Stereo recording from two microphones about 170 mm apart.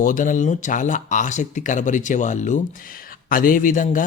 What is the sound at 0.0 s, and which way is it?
Speech, 50° left (ahead or behind).